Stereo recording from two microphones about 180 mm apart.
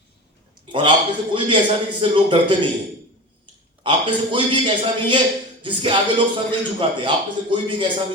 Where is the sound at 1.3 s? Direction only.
25° right (ahead or behind).